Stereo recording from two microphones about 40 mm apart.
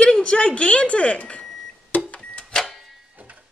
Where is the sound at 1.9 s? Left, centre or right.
Left.